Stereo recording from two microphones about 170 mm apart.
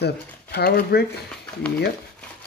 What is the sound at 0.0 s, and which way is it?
Speech, 70° left (ahead or behind).